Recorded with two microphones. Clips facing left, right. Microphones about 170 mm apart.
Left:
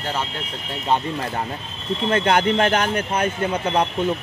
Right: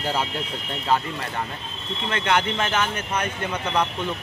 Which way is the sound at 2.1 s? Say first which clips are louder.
Left 5 dB; 40° left (ahead or behind).